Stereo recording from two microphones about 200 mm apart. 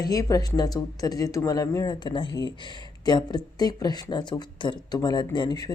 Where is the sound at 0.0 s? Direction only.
15° left (ahead or behind).